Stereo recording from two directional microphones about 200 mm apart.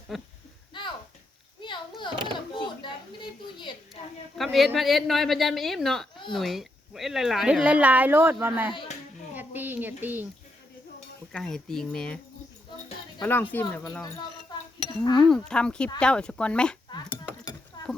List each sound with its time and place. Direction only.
0.1 s a woman's voice: centre (ahead or behind)
0.7 s a sound: 25° left (ahead or behind)
4.4 s a woman's voice: centre (ahead or behind)
9.3 s a sound: 10° right (ahead or behind)
11.3 s a woman's voice: centre (ahead or behind)
13.2 s speech: 10° left (ahead or behind)
15.1 s a woman's voice: centre (ahead or behind)